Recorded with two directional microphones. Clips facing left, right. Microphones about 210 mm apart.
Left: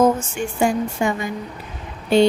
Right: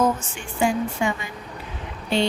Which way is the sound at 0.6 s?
45° left (ahead or behind).